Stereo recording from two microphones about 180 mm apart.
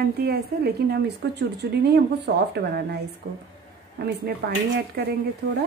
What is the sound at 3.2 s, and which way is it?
A woman's voice, 55° right (ahead or behind).